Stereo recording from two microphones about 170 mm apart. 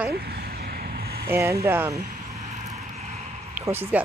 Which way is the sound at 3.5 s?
10° right (ahead or behind).